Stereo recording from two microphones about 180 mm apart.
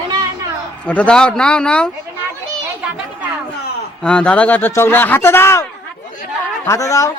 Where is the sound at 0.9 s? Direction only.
5° left (ahead or behind).